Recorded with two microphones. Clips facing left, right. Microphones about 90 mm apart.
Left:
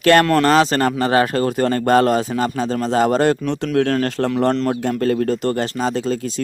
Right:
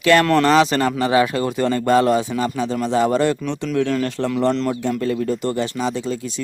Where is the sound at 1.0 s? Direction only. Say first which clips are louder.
Even; 50° left (ahead or behind); by 4.3 s 65° left (ahead or behind).